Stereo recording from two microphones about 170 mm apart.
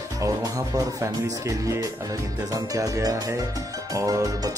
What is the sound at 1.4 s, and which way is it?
Speech, 20° right (ahead or behind).